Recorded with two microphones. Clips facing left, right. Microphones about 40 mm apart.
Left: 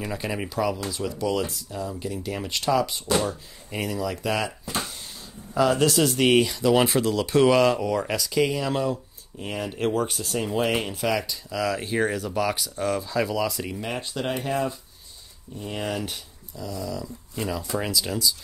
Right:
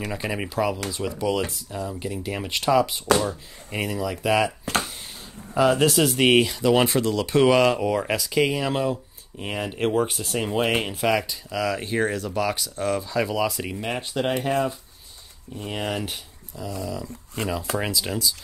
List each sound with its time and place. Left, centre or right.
0.1 s speech: centre
4.7 s speech: right
5.5 s speech: centre
15.6 s speech: right
17.4 s speech: right
17.7 s speech: centre